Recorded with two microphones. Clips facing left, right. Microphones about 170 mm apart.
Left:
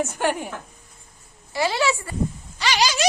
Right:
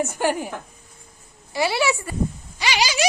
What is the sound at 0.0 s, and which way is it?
Speech, 10° right (ahead or behind).